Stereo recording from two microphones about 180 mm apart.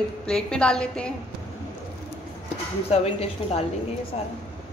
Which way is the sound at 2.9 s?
35° left (ahead or behind).